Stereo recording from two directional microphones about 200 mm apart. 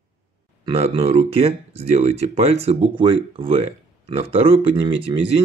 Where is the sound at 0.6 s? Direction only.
30° right (ahead or behind).